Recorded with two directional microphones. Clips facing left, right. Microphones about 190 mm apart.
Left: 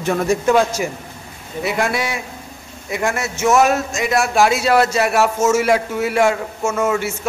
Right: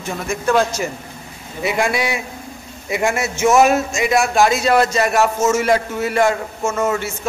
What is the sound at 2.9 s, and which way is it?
Speech, 10° right (ahead or behind).